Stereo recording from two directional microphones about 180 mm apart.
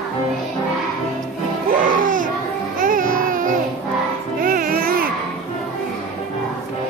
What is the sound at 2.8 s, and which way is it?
Babbling, 50° right (ahead or behind).